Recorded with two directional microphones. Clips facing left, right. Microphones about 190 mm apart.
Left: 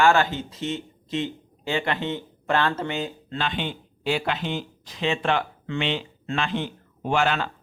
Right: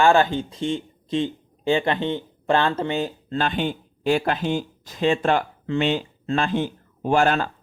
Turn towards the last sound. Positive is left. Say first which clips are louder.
# right 4 dB
turn(degrees=-45)  # may be behind; listen again after turning